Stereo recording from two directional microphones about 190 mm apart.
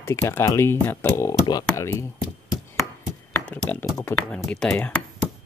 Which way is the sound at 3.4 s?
5° left (ahead or behind).